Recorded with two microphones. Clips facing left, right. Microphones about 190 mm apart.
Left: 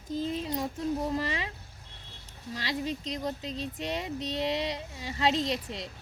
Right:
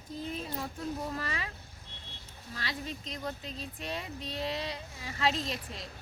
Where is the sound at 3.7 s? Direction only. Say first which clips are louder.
Left 4 dB; 25° left (ahead or behind).